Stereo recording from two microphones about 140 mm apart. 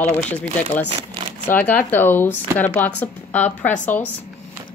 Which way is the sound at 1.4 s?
10° left (ahead or behind).